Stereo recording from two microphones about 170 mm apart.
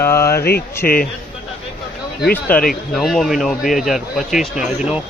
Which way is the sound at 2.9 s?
Centre (ahead or behind).